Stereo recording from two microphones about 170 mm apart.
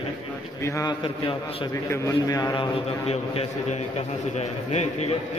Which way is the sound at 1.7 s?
15° left (ahead or behind).